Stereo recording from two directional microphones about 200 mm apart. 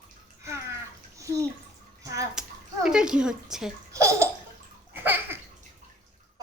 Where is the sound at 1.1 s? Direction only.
15° right (ahead or behind).